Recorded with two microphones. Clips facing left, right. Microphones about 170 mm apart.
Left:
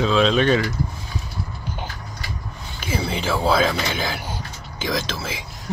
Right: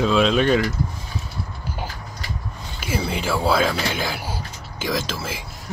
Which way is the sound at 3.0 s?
5° right (ahead or behind).